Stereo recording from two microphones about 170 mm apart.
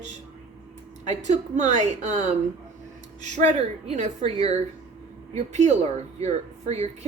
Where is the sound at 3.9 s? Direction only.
45° right (ahead or behind).